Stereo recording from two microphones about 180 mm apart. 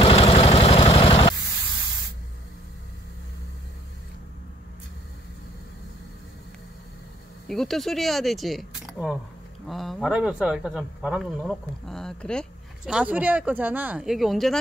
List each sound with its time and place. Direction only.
0.0 s vehicle: 35° left (ahead or behind)
7.4 s speech: centre (ahead or behind)